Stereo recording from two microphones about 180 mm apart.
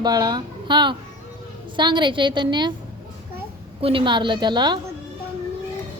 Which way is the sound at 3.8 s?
30° right (ahead or behind).